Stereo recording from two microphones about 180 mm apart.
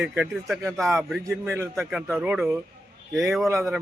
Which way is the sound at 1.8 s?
Centre (ahead or behind).